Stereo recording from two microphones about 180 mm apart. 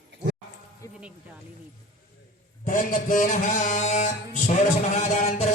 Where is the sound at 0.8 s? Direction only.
15° left (ahead or behind).